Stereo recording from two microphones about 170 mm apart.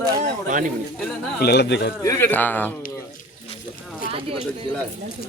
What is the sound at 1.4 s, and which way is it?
Speech, 75° left (ahead or behind).